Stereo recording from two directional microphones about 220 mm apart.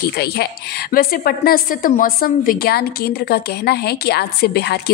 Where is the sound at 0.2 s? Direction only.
45° left (ahead or behind).